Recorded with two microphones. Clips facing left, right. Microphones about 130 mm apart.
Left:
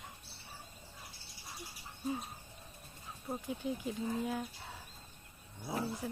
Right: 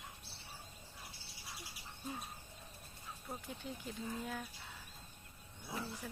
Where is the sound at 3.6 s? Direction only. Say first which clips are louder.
Left 8 dB; 10° left (ahead or behind).